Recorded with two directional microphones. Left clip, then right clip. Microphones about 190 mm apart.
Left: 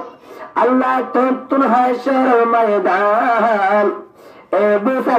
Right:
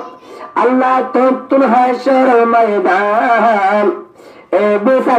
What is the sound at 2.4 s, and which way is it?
Speech, 20° right (ahead or behind).